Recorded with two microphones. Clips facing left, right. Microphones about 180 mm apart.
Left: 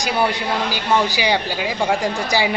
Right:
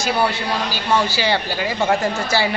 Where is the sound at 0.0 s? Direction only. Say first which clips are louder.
Even; 15° left (ahead or behind).